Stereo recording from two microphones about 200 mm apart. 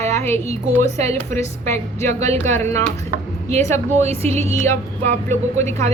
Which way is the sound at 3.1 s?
35° right (ahead or behind).